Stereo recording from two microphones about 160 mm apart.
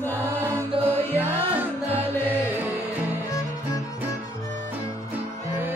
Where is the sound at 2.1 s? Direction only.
15° left (ahead or behind).